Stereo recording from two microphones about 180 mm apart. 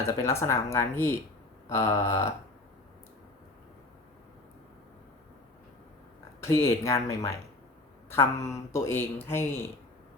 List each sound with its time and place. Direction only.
0.0 s speech: 15° left (ahead or behind)
6.4 s speech: 15° left (ahead or behind)